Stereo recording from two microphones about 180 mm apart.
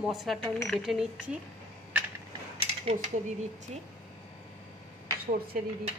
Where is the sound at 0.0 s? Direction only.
Centre (ahead or behind).